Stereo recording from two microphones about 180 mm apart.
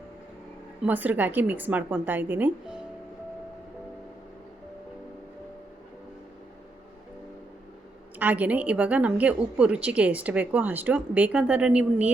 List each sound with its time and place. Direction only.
0.9 s a woman's voice: 10° right (ahead or behind)
8.2 s a woman's voice: 10° right (ahead or behind)